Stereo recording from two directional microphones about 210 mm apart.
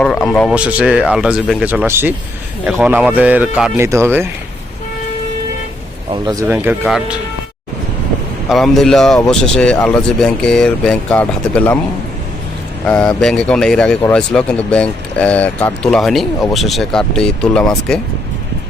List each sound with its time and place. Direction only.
0.0 s speech: 5° left (ahead or behind)
0.5 s speech: 5° right (ahead or behind)
6.2 s speech: 15° right (ahead or behind)
8.4 s speech: centre (ahead or behind)
12.8 s speech: 5° left (ahead or behind)